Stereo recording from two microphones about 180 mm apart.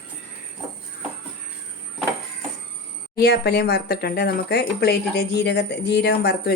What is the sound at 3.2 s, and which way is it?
Speech, 65° left (ahead or behind).